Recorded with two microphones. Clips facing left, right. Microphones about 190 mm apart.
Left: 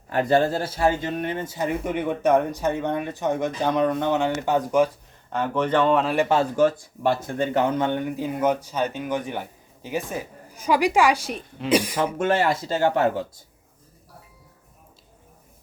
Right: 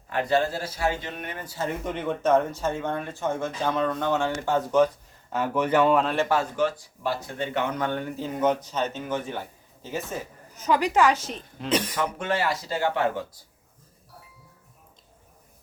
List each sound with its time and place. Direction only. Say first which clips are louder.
0.1 s speech: left 4 dB; 45° left (ahead or behind)
1.2 s speech: left 5 dB; 25° left (ahead or behind)
5.3 s speech: left 1 dB; 10° right (ahead or behind)
6.2 s speech: left 4 dB; 25° left (ahead or behind)
6.6 s speech: left 6 dB; 50° left (ahead or behind)
7.8 s speech: left 4 dB; 20° left (ahead or behind)
12.2 s speech: left 7 dB; 50° left (ahead or behind)